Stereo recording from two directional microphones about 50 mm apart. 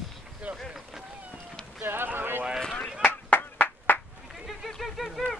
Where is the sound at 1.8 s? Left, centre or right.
Right.